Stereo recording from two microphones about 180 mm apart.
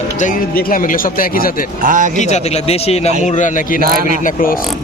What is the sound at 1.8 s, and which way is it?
Speech, 45° right (ahead or behind).